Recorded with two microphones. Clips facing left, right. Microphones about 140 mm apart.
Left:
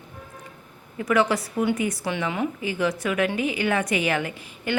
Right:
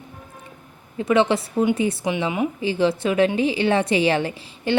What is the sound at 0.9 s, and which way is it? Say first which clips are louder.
A woman's voice: right 3 dB; 25° right (ahead or behind).